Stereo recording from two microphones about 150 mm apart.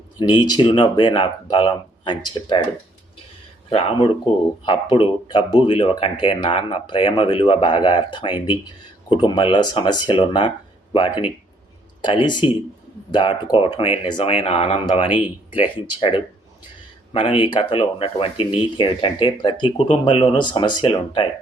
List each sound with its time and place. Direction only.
0.2 s speech: 30° left (ahead or behind)
3.7 s speech: 40° left (ahead or behind)
12.0 s speech: 30° left (ahead or behind)